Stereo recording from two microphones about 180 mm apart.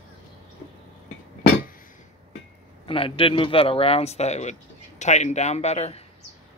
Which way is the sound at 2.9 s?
30° left (ahead or behind).